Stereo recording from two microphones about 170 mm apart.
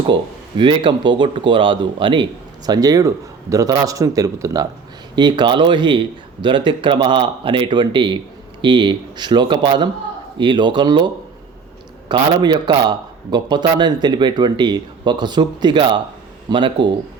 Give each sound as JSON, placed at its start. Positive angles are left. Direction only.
{"t": 0.0, "sound": "a man's voice", "side_deg": -30}